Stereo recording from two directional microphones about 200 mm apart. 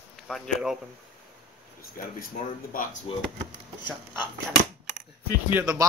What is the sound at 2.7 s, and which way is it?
Speech, 45° left (ahead or behind).